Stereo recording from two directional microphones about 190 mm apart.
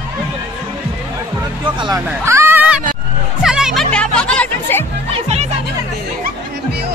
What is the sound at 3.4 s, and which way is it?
Music, 5° right (ahead or behind).